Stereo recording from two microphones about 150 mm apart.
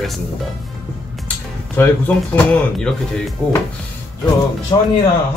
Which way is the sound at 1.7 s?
10° left (ahead or behind).